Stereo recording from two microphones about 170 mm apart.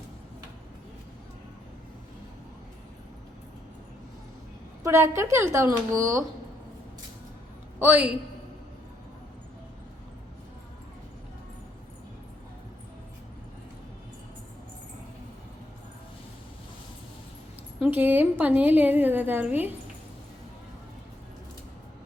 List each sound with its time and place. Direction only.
4.8 s a woman's voice: 15° right (ahead or behind)
7.8 s a woman's voice: 10° right (ahead or behind)
17.7 s a woman's voice: 10° right (ahead or behind)